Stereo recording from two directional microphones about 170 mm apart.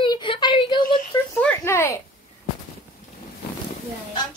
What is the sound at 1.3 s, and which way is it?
Speech, 10° left (ahead or behind).